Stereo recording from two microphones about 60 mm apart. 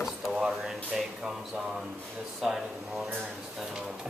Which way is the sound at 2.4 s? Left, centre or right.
Centre.